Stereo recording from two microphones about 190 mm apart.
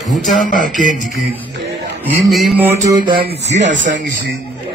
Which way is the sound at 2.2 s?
Centre (ahead or behind).